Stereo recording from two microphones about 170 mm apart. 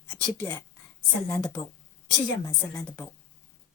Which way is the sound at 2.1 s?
20° left (ahead or behind).